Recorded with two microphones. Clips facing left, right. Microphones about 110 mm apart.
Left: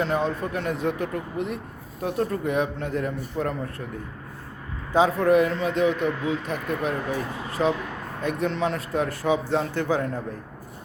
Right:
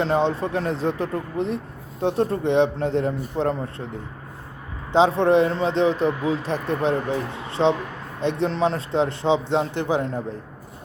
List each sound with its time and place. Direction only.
0.0 s speech: 30° right (ahead or behind)
4.9 s speech: 25° right (ahead or behind)